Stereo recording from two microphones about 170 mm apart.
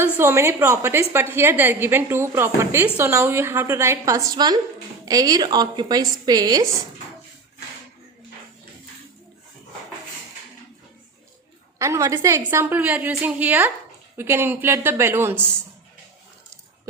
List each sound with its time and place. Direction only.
0.0 s a woman's voice: 15° right (ahead or behind)
11.8 s a woman's voice: 15° right (ahead or behind)